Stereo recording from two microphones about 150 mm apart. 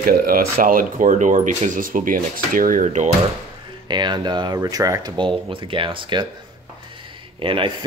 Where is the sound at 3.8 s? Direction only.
30° right (ahead or behind).